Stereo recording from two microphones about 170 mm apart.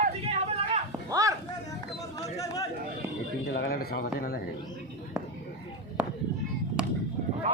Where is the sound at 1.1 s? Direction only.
20° right (ahead or behind).